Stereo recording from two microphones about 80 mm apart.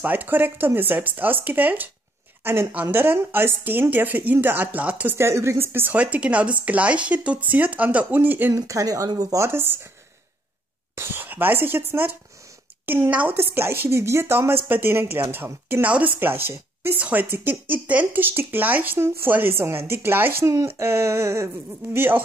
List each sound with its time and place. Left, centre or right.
0.0 s a woman's voice: right
5.1 s a sound: right
5.9 s speech: centre
8.5 s speech: right
11.0 s speech: right
20.5 s a sound: right
21.9 s speech: right